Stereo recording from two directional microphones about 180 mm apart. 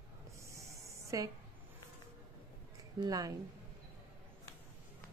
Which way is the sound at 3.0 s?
20° right (ahead or behind).